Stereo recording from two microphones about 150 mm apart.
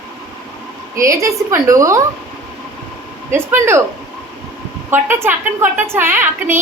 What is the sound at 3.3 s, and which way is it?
Speech, 15° right (ahead or behind).